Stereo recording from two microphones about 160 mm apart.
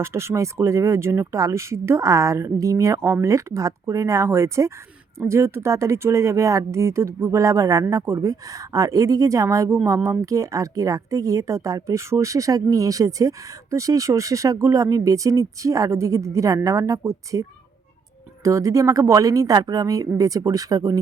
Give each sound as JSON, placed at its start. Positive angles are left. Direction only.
{"t": 0.0, "sound": "speech", "side_deg": -15}
{"t": 18.4, "sound": "speech", "side_deg": -20}